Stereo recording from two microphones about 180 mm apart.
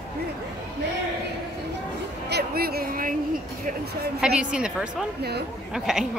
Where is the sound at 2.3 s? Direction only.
60° right (ahead or behind).